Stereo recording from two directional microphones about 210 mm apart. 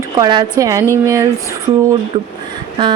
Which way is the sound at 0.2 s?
20° right (ahead or behind).